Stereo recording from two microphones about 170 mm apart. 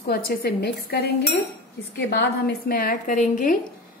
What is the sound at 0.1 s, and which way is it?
Cutlery, 65° left (ahead or behind).